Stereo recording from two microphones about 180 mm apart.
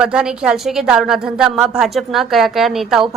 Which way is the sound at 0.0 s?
5° right (ahead or behind).